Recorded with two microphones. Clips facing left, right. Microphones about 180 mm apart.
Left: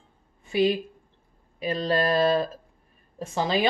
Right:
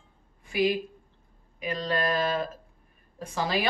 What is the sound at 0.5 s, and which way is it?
Speech, 25° left (ahead or behind).